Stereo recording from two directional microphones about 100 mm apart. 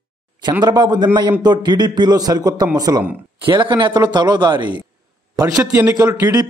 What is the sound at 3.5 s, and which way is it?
A man's voice, 50° right (ahead or behind).